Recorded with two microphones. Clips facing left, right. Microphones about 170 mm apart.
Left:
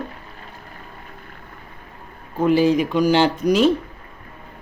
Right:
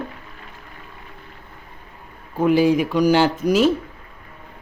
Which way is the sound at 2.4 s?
10° right (ahead or behind).